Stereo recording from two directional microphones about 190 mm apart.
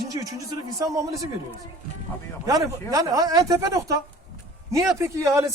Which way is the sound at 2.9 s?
20° right (ahead or behind).